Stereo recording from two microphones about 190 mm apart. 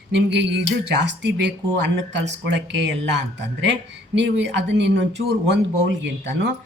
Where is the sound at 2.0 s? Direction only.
70° right (ahead or behind).